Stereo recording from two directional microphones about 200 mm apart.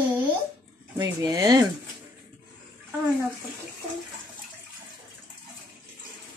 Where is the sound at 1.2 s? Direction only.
15° right (ahead or behind).